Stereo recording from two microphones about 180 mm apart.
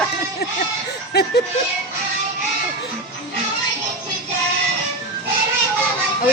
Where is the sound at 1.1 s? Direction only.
65° left (ahead or behind).